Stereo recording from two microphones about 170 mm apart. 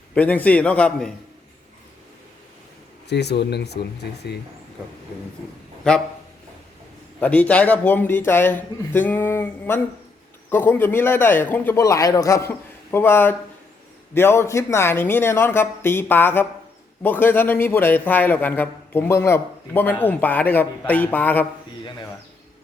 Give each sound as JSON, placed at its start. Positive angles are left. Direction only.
{"t": 0.1, "sound": "a man's voice", "side_deg": 10}
{"t": 3.1, "sound": "speech", "side_deg": 80}
{"t": 5.9, "sound": "speech", "side_deg": 5}
{"t": 7.2, "sound": "a man's voice", "side_deg": 10}